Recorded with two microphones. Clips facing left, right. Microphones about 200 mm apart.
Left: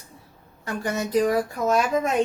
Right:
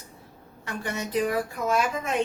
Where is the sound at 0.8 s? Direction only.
40° left (ahead or behind).